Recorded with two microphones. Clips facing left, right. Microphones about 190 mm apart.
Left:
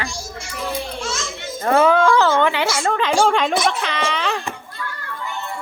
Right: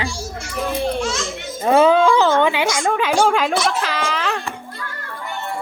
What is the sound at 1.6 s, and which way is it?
Speech, 20° right (ahead or behind).